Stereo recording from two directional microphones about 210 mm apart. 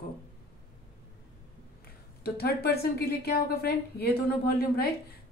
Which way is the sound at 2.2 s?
50° left (ahead or behind).